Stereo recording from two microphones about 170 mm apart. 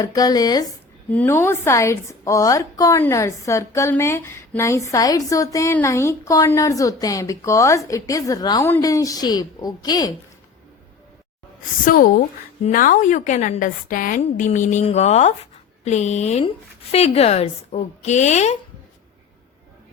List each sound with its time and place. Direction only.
0.0 s a woman's voice: 20° left (ahead or behind)
1.1 s a woman's voice: 10° left (ahead or behind)
11.9 s a woman's voice: 55° left (ahead or behind)